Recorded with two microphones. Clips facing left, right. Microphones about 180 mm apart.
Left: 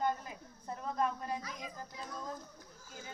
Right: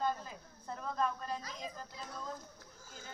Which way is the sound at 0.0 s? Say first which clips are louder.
Left 1 dB; 15° left (ahead or behind).